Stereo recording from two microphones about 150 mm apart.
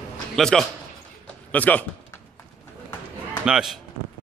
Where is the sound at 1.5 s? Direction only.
10° left (ahead or behind).